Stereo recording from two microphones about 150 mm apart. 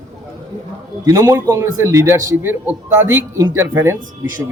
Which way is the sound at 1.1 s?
20° right (ahead or behind).